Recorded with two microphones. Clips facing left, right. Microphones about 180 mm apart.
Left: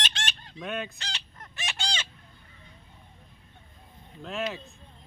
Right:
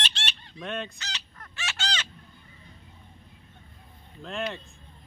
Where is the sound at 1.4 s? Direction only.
15° left (ahead or behind).